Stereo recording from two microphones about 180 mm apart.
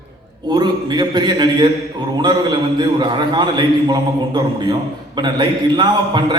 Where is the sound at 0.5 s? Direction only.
25° right (ahead or behind).